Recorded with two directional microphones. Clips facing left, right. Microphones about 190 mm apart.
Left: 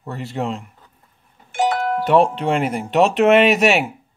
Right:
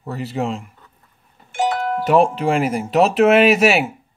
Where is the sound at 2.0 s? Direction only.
5° right (ahead or behind).